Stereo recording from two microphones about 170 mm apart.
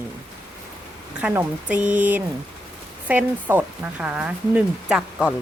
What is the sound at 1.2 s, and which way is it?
Speech, 10° right (ahead or behind).